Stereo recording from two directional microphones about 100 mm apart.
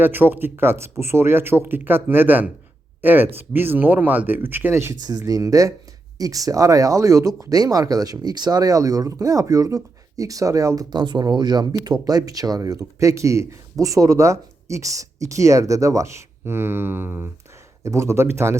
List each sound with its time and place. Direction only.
0.0 s speech: 20° right (ahead or behind)
4.9 s speech: 40° right (ahead or behind)
10.8 s speech: 45° right (ahead or behind); by 18.5 s 25° right (ahead or behind)